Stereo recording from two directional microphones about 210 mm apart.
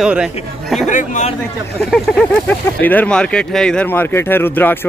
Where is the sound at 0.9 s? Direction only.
35° left (ahead or behind).